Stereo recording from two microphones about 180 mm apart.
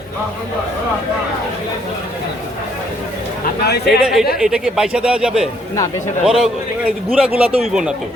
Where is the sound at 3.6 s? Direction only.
65° left (ahead or behind).